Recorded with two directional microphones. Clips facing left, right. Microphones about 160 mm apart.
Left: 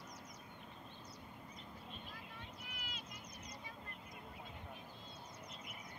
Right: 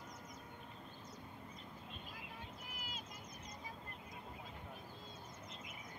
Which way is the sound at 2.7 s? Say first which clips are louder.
Right 1 dB; 40° right (ahead or behind).